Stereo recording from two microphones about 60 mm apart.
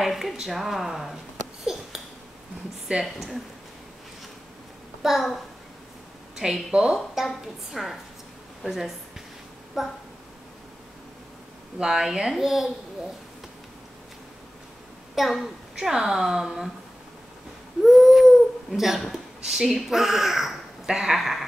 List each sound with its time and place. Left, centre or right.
0.0 s speech: centre
1.7 s a sound: centre
2.9 s a woman's voice: centre
5.0 s a woman's voice: centre
7.2 s a woman's voice: centre
11.8 s a woman's voice: centre
15.1 s a woman's voice: centre
17.8 s a sound: centre
19.1 s speech: centre